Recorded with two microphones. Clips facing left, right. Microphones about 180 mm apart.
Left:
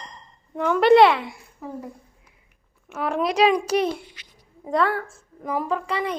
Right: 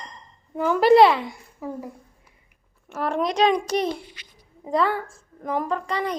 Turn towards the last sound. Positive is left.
turn(degrees=5)  # may be behind; listen again after turning